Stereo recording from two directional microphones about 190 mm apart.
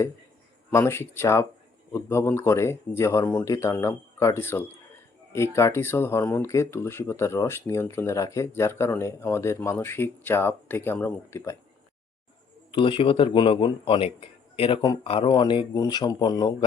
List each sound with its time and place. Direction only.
0.7 s speech: 15° left (ahead or behind)
12.7 s a man's voice: 25° left (ahead or behind)